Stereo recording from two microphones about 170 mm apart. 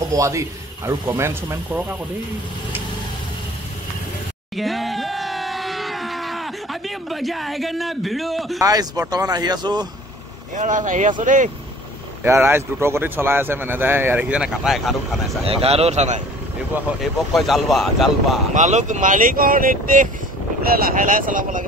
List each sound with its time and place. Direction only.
0.1 s speech: 20° right (ahead or behind)
4.6 s a sound: centre (ahead or behind)
8.5 s speech: 20° right (ahead or behind)
10.5 s speech: 45° right (ahead or behind)
12.2 s speech: 15° right (ahead or behind)
15.4 s a man's voice: 35° right (ahead or behind)
17.0 s speech: centre (ahead or behind)
18.5 s speech: 45° right (ahead or behind)